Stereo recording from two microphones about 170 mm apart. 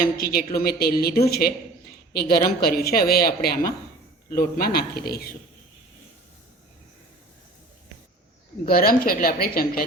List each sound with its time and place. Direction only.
0.2 s a woman's voice: 65° left (ahead or behind)
8.6 s a woman's voice: 60° left (ahead or behind)